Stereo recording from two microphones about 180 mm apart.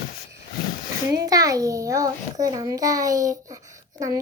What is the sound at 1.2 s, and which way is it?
A child's voice, 20° right (ahead or behind).